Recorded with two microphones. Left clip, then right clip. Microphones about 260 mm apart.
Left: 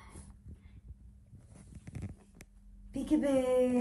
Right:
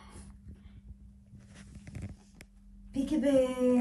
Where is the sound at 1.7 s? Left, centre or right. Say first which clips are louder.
Left 1 dB; centre.